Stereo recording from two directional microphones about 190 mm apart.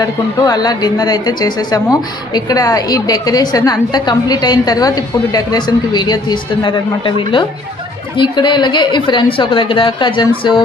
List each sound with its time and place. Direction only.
0.0 s speech: 20° left (ahead or behind)